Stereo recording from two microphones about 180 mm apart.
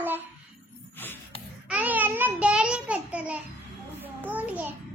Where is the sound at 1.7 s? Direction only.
10° right (ahead or behind).